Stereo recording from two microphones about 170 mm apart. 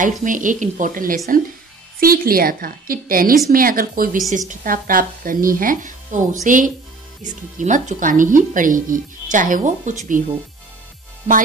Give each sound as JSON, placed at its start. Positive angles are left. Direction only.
{"t": 0.0, "sound": "a woman's voice", "side_deg": -50}